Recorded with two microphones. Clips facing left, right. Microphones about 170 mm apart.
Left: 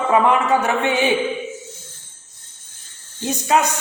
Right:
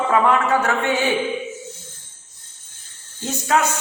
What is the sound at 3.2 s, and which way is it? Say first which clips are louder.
Speech: left 2 dB; 15° left (ahead or behind).